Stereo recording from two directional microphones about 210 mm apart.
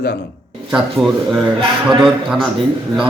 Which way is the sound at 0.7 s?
Centre (ahead or behind).